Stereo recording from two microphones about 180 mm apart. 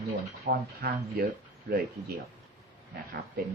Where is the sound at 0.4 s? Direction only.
60° right (ahead or behind).